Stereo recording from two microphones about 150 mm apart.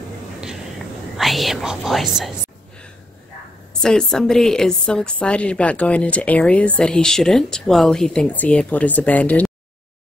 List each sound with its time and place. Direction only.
1.1 s speech: centre (ahead or behind)
3.8 s a woman's voice: 5° left (ahead or behind)